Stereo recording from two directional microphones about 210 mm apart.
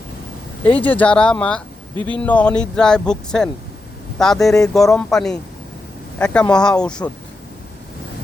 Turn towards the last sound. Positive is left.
turn(degrees=5)  # may be behind; listen again after turning